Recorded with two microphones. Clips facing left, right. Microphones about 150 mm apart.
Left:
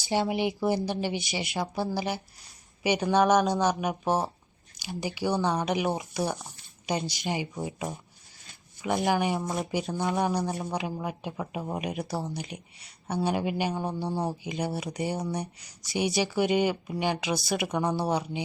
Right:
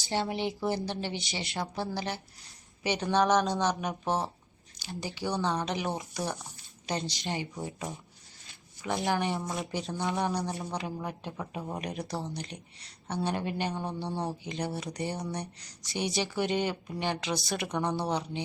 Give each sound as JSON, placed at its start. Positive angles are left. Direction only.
{"t": 0.1, "sound": "speech", "side_deg": 10}
{"t": 5.7, "sound": "speech", "side_deg": 15}
{"t": 7.3, "sound": "speech", "side_deg": 20}
{"t": 9.0, "sound": "speech", "side_deg": 0}